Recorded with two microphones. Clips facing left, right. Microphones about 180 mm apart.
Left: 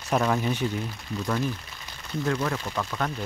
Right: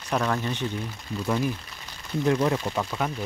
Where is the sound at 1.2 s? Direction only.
10° right (ahead or behind).